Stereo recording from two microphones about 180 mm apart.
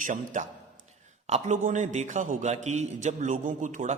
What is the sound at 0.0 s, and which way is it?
A man's voice, 45° right (ahead or behind).